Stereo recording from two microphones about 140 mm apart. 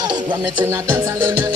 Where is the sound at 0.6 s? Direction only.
15° right (ahead or behind).